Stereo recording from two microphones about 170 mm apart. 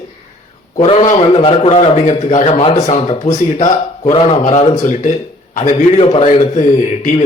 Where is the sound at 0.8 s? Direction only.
40° left (ahead or behind).